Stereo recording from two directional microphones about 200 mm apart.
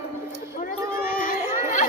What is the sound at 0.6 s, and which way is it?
Run, 45° left (ahead or behind).